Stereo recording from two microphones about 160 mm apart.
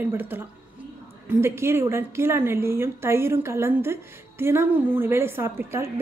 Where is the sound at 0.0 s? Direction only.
15° right (ahead or behind).